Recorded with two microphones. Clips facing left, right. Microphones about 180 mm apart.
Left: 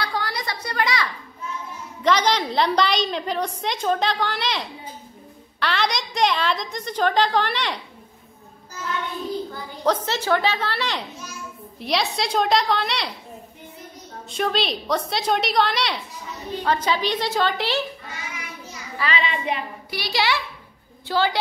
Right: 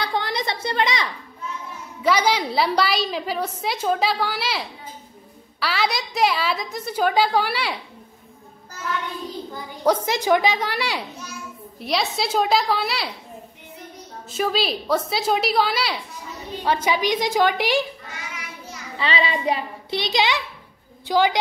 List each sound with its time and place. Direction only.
0.0 s a sound: 20° right (ahead or behind)
2.0 s a woman's voice: 10° right (ahead or behind)
9.5 s a woman's voice: 10° right (ahead or behind)
14.3 s a woman's voice: 5° right (ahead or behind)
18.9 s child singing: 30° right (ahead or behind)
20.0 s a child's voice: 20° right (ahead or behind)